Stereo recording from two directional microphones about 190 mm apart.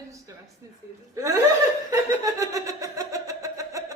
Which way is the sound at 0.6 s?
15° right (ahead or behind).